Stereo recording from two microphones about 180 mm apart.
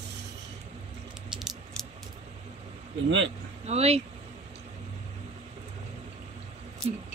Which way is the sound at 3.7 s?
35° right (ahead or behind).